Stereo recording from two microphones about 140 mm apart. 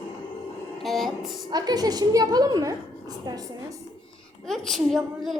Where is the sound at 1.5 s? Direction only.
25° right (ahead or behind).